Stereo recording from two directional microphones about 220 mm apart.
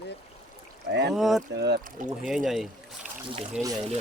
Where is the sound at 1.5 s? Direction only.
50° right (ahead or behind).